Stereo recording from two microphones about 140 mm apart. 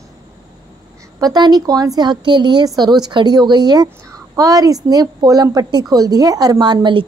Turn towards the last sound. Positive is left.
turn(degrees=-35)  # may be behind; listen again after turning